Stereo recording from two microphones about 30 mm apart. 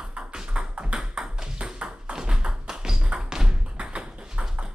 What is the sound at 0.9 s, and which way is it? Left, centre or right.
Ping, right.